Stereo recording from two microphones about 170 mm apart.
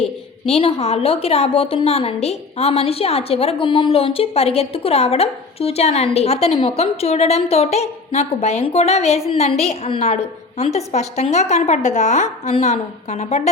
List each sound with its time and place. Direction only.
0.4 s a woman's voice: 35° left (ahead or behind)